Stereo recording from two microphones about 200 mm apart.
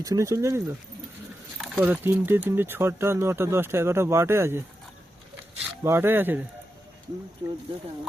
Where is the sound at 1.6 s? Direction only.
10° right (ahead or behind).